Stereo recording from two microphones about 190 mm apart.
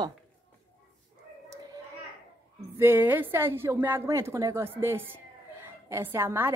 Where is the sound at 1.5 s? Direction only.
20° right (ahead or behind).